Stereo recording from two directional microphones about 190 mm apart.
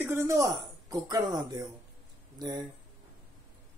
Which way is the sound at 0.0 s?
15° right (ahead or behind).